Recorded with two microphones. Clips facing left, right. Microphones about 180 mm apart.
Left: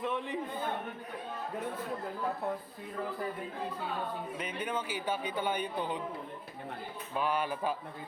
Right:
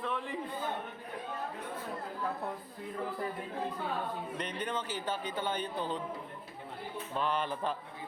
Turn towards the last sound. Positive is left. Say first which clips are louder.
# left 1 dB
turn(degrees=10)  # may be behind; listen again after turning